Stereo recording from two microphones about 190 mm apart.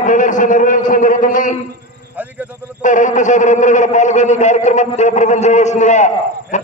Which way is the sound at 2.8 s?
40° left (ahead or behind).